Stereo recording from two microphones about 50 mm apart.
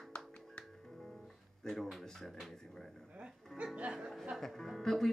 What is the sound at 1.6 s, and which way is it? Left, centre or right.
Speech, centre.